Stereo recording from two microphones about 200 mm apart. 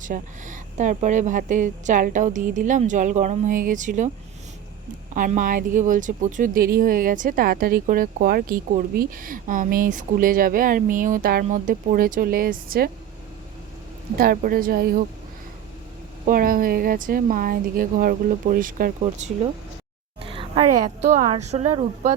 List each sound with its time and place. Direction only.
0.0 s speech: 40° right (ahead or behind)
5.1 s speech: 40° right (ahead or behind)
14.2 s speech: 45° right (ahead or behind)
16.2 s speech: 45° right (ahead or behind)
19.0 s speech: 30° right (ahead or behind)
20.2 s a sound: 25° right (ahead or behind)
20.8 s speech: 40° right (ahead or behind)